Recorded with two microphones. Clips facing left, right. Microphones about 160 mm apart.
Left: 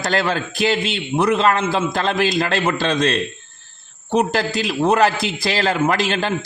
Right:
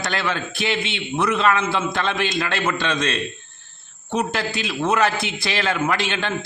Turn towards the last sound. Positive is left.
turn(degrees=40)  # may be behind; listen again after turning